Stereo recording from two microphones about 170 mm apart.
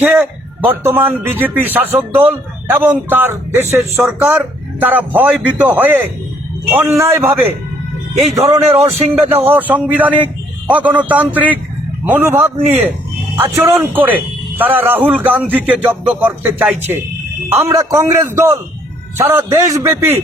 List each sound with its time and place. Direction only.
0.0 s speech: 10° right (ahead or behind)